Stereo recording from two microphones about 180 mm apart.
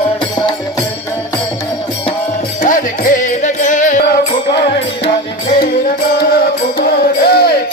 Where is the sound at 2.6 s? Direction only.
45° left (ahead or behind).